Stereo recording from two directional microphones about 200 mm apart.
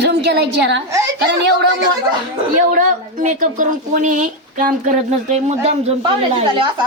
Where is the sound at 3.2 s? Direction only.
40° right (ahead or behind).